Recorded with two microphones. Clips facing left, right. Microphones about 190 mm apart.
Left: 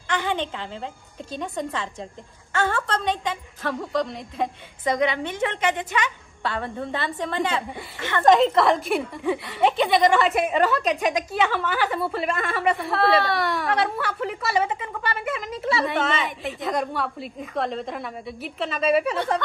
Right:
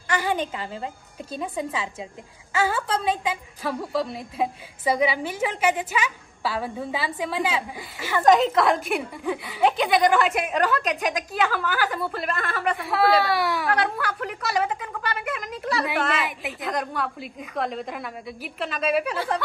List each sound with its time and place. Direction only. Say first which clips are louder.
0.1 s a woman's voice: right 1 dB; 5° right (ahead or behind)